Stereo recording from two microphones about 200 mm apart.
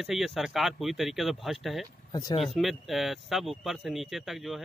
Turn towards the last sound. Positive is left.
turn(degrees=0)  # may be behind; listen again after turning